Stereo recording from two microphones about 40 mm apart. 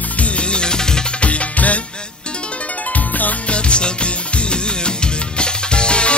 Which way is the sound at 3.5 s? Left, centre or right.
Left.